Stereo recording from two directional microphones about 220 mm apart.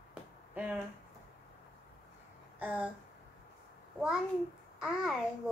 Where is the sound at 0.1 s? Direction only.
5° right (ahead or behind).